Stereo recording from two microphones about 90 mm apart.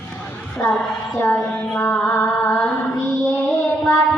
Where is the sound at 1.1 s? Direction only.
25° left (ahead or behind).